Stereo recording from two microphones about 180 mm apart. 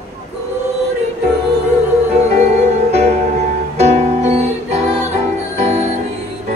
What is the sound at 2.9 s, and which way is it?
Music, 35° right (ahead or behind).